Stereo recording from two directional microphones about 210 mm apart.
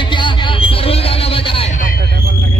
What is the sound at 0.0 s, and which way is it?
Hubbub, 20° left (ahead or behind).